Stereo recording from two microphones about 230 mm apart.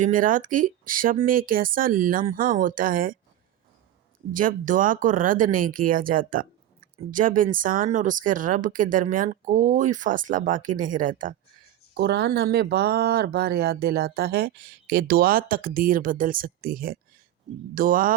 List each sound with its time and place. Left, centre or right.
0.0 s speech: right
4.3 s speech: right
11.9 s speech: right